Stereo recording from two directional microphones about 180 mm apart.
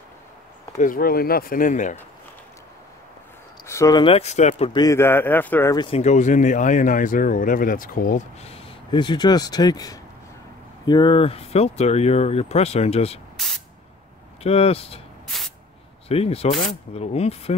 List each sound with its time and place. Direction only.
0.7 s speech: 50° left (ahead or behind)
3.6 s speech: 15° left (ahead or behind); by 4.7 s 35° left (ahead or behind)
4.7 s a man's voice: 15° left (ahead or behind)
5.8 s speech: 35° left (ahead or behind); by 8.2 s 50° left (ahead or behind)
8.4 s speech: 30° left (ahead or behind)
14.4 s speech: 35° left (ahead or behind)
15.2 s spray: centre (ahead or behind)
16.1 s speech: 35° left (ahead or behind)